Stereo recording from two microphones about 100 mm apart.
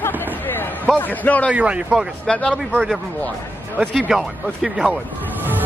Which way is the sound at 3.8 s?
10° right (ahead or behind).